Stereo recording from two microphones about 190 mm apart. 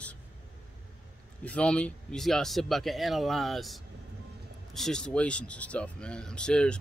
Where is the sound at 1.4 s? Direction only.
5° left (ahead or behind).